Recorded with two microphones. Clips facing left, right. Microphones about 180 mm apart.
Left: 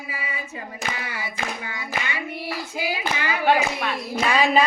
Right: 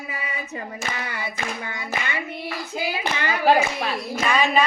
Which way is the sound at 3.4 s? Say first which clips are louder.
Right 2 dB; 35° right (ahead or behind).